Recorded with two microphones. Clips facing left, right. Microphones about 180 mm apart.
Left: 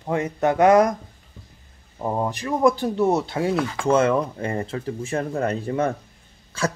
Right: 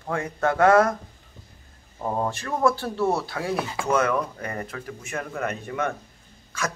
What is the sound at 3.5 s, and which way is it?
Speech, 25° right (ahead or behind).